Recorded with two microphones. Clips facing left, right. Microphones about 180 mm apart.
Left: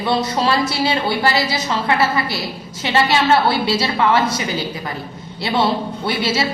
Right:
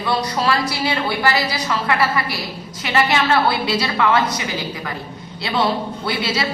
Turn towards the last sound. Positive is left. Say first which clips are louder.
# left 3 dB
turn(degrees=25)  # may be behind; listen again after turning